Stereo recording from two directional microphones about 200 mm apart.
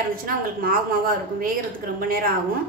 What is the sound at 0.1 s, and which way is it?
A woman's voice, 45° right (ahead or behind).